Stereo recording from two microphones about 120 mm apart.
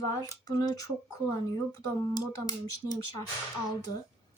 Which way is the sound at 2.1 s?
30° left (ahead or behind).